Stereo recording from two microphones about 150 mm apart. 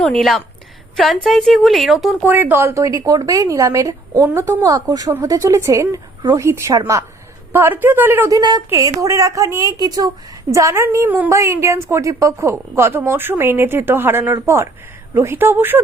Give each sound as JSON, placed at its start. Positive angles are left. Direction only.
{"t": 0.0, "sound": "a woman's voice", "side_deg": 5}
{"t": 2.2, "sound": "a woman's voice", "side_deg": -10}
{"t": 8.4, "sound": "a woman's voice", "side_deg": -30}